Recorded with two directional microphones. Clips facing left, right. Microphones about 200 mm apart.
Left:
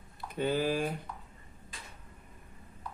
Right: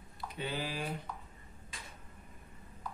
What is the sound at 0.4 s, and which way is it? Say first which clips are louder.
Speech: left 9 dB; 45° left (ahead or behind).